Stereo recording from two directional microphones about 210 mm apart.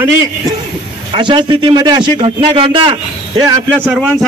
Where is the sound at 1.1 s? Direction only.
25° right (ahead or behind).